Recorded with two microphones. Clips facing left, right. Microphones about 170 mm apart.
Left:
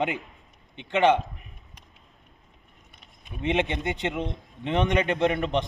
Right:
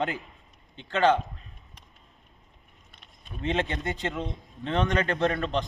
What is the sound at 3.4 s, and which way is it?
A man's voice, 15° left (ahead or behind).